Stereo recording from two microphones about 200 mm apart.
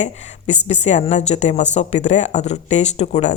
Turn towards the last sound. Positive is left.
turn(degrees=35)  # may be behind; listen again after turning